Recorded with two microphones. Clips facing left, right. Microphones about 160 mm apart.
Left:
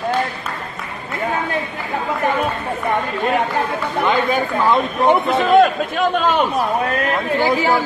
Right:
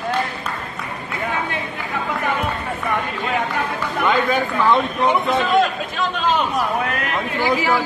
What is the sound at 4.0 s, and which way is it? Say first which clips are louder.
Chatter: left 1 dB; 20° left (ahead or behind).